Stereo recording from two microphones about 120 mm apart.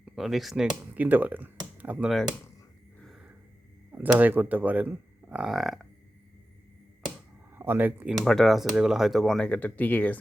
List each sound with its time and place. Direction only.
0.0 s speech: centre (ahead or behind)
3.0 s a sound: 5° right (ahead or behind)
3.9 s speech: 15° right (ahead or behind)
7.5 s speech: 15° right (ahead or behind)
8.2 s speech: centre (ahead or behind)